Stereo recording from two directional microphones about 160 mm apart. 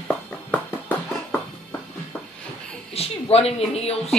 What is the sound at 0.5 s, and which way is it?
Music, 10° left (ahead or behind).